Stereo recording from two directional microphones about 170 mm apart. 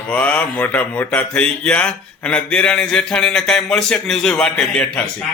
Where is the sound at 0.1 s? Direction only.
10° left (ahead or behind).